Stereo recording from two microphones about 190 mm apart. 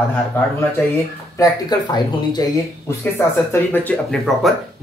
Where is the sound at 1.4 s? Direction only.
20° left (ahead or behind).